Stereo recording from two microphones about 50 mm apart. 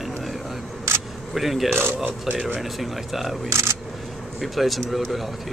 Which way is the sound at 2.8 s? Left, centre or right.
Centre.